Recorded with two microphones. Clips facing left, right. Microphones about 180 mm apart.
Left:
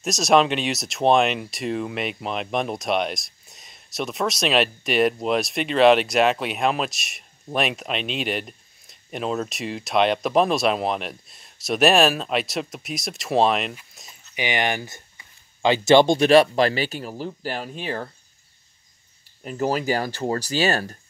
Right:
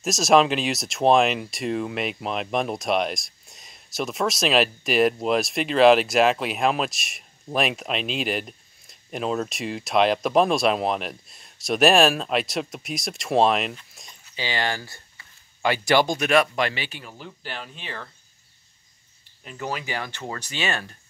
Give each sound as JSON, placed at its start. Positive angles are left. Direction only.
{"t": 0.0, "sound": "speech", "side_deg": 0}
{"t": 14.3, "sound": "speech", "side_deg": 20}
{"t": 19.4, "sound": "speech", "side_deg": 40}